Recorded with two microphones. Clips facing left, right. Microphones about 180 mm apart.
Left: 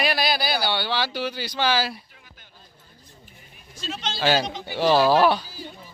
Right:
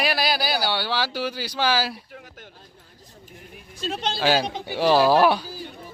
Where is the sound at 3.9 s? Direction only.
55° right (ahead or behind).